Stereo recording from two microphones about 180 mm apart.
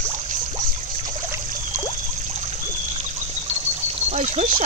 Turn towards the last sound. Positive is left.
turn(degrees=-40)  # may be behind; listen again after turning